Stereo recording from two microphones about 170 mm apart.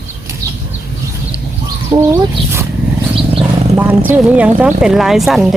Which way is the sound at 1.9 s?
10° right (ahead or behind).